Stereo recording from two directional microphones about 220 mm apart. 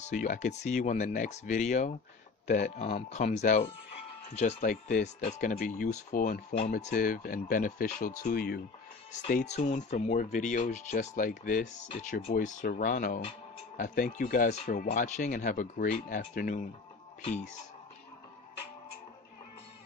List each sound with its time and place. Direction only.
0.0 s speech: 35° left (ahead or behind)
9.1 s speech: 35° left (ahead or behind)